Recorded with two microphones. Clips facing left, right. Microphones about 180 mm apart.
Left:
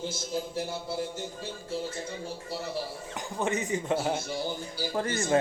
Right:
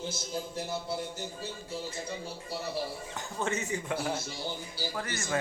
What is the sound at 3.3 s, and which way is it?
Speech, 15° left (ahead or behind).